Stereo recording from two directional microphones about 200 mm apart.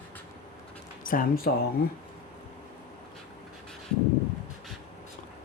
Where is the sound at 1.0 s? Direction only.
45° left (ahead or behind).